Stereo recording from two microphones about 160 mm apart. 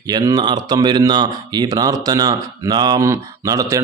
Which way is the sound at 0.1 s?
25° right (ahead or behind).